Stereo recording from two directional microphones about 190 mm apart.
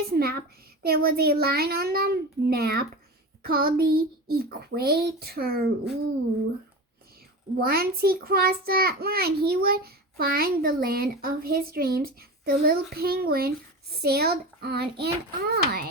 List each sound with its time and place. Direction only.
0.1 s a child's voice: 55° right (ahead or behind)
7.6 s a child's voice: 55° right (ahead or behind)